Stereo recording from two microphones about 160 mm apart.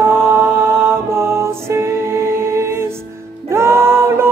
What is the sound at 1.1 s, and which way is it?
Music, 15° right (ahead or behind).